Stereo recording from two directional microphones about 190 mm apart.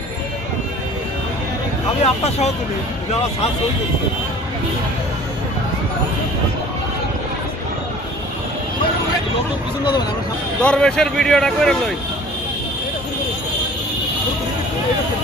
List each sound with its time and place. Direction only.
2.0 s speech: 35° left (ahead or behind)
10.6 s speech: 5° left (ahead or behind)